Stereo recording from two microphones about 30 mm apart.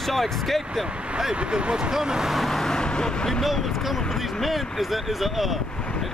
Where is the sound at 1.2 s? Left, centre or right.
Right.